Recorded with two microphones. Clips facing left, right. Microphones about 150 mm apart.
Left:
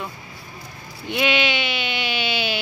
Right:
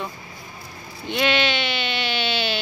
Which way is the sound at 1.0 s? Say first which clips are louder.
Even; 10° left (ahead or behind).